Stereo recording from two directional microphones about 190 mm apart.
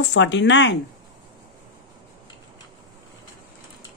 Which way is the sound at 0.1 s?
70° left (ahead or behind).